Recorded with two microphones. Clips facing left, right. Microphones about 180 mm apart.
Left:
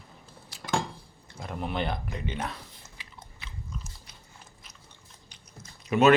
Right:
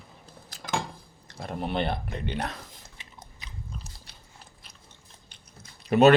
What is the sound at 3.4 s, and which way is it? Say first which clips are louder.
Biting: left 1 dB; 40° right (ahead or behind).